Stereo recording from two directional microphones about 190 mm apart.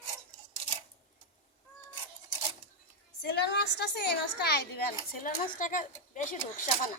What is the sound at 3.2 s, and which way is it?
A woman's voice, 60° left (ahead or behind).